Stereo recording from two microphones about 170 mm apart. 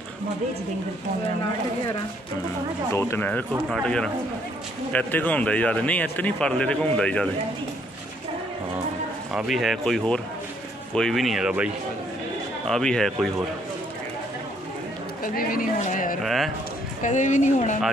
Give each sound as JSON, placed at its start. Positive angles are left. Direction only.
{"t": 2.9, "sound": "speech", "side_deg": 15}
{"t": 9.3, "sound": "speech", "side_deg": 0}
{"t": 15.3, "sound": "speech", "side_deg": 50}
{"t": 16.2, "sound": "speech", "side_deg": 0}
{"t": 17.0, "sound": "speech", "side_deg": 45}